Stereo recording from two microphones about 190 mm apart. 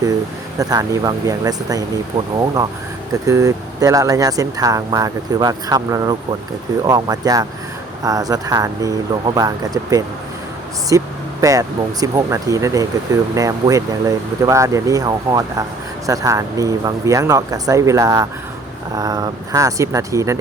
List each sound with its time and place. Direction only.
0.6 s speech: 20° right (ahead or behind)